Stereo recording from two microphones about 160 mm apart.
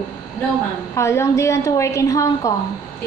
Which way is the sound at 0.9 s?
15° left (ahead or behind).